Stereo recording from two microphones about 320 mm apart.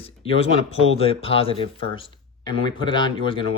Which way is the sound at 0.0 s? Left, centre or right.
Centre.